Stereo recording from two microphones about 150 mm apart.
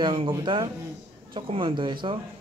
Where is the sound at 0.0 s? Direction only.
35° right (ahead or behind).